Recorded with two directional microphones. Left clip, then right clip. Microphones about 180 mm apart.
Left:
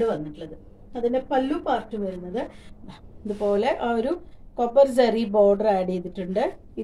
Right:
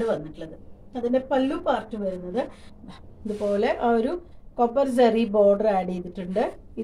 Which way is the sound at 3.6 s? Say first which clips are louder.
Right 1 dB; 25° left (ahead or behind).